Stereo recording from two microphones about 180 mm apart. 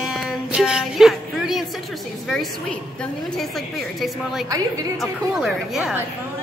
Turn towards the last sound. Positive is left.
turn(degrees=0)  # may be behind; listen again after turning